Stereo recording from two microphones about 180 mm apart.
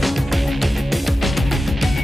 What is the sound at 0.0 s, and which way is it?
Music, centre (ahead or behind).